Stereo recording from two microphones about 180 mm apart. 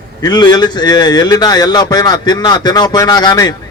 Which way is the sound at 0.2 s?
20° left (ahead or behind).